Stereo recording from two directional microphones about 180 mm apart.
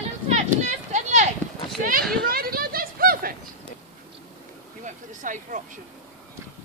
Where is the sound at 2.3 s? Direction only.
55° right (ahead or behind).